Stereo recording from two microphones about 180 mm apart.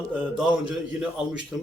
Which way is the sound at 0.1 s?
5° right (ahead or behind).